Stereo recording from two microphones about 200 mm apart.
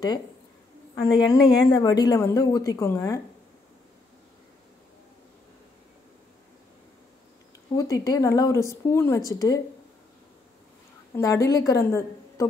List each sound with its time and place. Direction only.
1.1 s speech: 20° left (ahead or behind)
7.7 s speech: 15° left (ahead or behind)
11.1 s speech: 15° left (ahead or behind)